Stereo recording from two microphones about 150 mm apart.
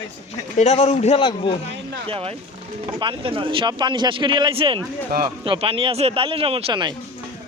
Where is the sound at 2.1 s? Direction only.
40° right (ahead or behind).